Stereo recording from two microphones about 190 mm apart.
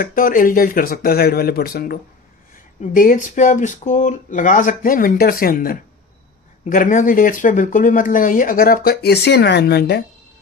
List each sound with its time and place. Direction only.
0.0 s speech: 45° left (ahead or behind)